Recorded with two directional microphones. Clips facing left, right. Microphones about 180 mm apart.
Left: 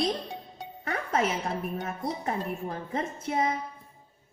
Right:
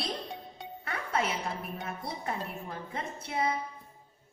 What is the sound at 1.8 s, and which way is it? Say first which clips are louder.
Speech: left 5 dB; 45° left (ahead or behind).